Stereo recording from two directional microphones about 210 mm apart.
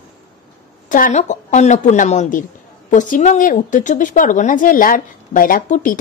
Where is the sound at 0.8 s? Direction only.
40° left (ahead or behind).